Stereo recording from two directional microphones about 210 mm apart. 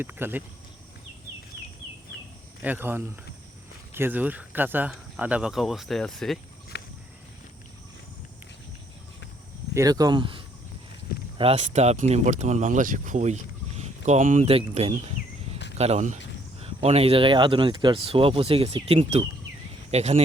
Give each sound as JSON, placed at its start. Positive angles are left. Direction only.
{"t": 0.0, "sound": "speech", "side_deg": -10}
{"t": 2.6, "sound": "speech", "side_deg": -10}
{"t": 6.7, "sound": "a sound", "side_deg": 55}
{"t": 9.7, "sound": "speech", "side_deg": -15}